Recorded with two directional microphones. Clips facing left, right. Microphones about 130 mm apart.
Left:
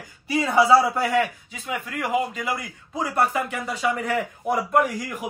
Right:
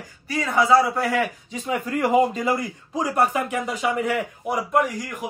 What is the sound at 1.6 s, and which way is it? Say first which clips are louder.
Speech: right 5 dB; 35° right (ahead or behind).